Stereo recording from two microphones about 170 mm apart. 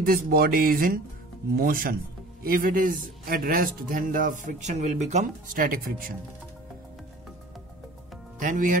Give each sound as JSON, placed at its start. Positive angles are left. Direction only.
{"t": 0.0, "sound": "a man's voice", "side_deg": -60}
{"t": 8.4, "sound": "a man's voice", "side_deg": -50}